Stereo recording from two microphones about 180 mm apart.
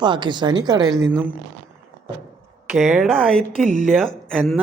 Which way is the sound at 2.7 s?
Centre (ahead or behind).